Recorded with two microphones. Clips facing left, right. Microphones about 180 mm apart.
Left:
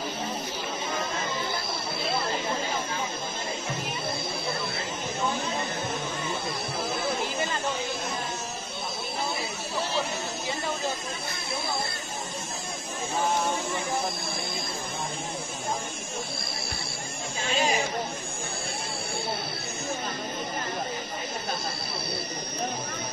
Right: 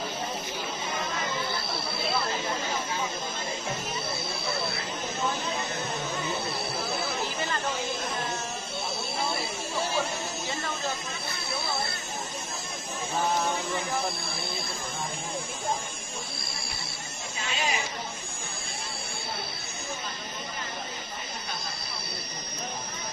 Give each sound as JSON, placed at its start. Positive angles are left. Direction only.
{"t": 17.6, "sound": "chatter", "side_deg": 35}